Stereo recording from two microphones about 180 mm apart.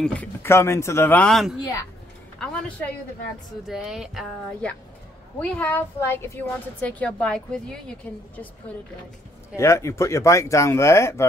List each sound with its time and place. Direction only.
0.0 s a woman's voice: 5° left (ahead or behind)
1.6 s a woman's voice: 15° left (ahead or behind)
3.6 s a woman's voice: 5° right (ahead or behind)
9.6 s a woman's voice: 15° left (ahead or behind)